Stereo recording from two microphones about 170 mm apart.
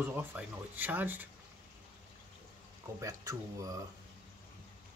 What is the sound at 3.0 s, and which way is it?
Speech, 20° right (ahead or behind).